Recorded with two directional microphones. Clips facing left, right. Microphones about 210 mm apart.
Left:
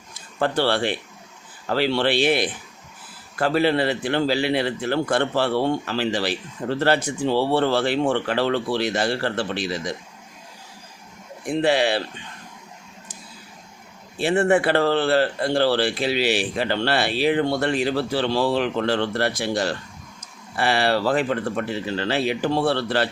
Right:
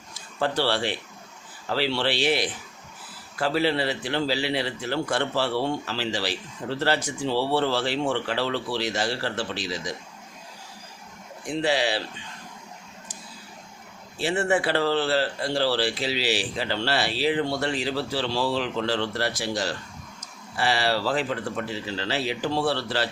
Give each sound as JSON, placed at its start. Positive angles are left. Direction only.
{"t": 0.1, "sound": "a man's voice", "side_deg": 55}
{"t": 11.4, "sound": "a man's voice", "side_deg": 55}
{"t": 14.2, "sound": "a man's voice", "side_deg": 55}